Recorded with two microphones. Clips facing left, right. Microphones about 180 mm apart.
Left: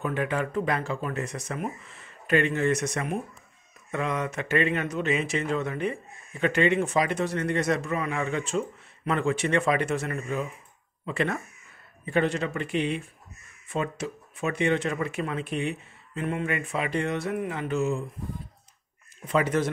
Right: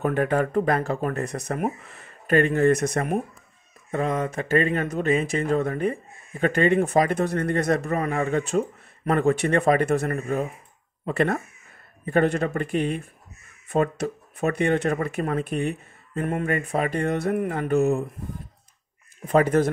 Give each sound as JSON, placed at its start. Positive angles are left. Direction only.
{"t": 0.0, "sound": "speech", "side_deg": -45}
{"t": 1.4, "sound": "speech", "side_deg": -55}
{"t": 19.2, "sound": "speech", "side_deg": -45}